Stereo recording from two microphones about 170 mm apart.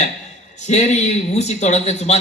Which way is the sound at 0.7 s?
40° left (ahead or behind).